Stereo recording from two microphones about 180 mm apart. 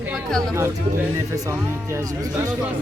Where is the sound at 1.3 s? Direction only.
15° right (ahead or behind).